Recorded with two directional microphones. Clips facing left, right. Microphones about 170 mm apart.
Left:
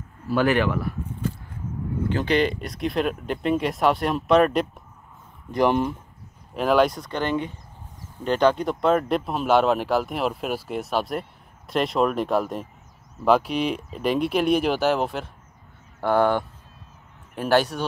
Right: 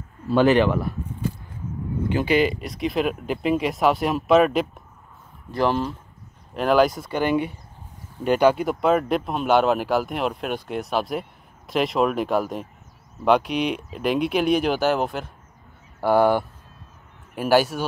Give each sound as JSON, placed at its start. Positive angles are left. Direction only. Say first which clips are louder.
{"t": 0.3, "sound": "speech", "louder": "right 4 dB", "side_deg": -25}
{"t": 2.0, "sound": "speech", "louder": "right 2 dB", "side_deg": -10}
{"t": 5.5, "sound": "speech", "louder": "left 2 dB", "side_deg": 15}
{"t": 6.5, "sound": "speech", "louder": "right 1 dB", "side_deg": 0}